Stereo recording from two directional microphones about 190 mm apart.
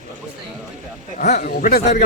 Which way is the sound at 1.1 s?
50° left (ahead or behind).